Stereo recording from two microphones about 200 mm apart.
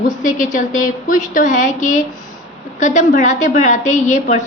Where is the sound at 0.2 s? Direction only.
40° left (ahead or behind).